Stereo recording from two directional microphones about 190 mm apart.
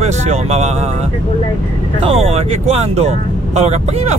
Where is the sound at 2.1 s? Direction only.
30° right (ahead or behind).